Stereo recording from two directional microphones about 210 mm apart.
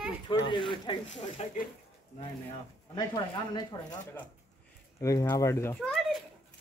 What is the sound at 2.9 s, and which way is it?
Speech, 20° left (ahead or behind).